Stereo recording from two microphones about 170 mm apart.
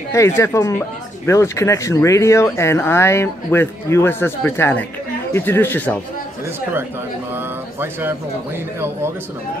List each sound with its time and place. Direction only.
0.1 s speech: 15° left (ahead or behind)
7.3 s speech: 10° right (ahead or behind)